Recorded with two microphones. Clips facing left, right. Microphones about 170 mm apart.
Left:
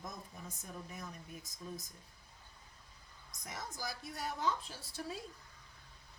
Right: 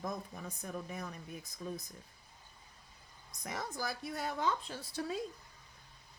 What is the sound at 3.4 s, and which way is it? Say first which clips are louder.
Speech: right 5 dB; 60° right (ahead or behind).